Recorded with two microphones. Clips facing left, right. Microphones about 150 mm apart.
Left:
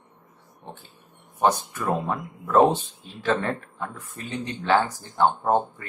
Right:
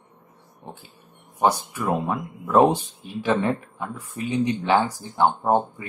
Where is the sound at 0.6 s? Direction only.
10° right (ahead or behind).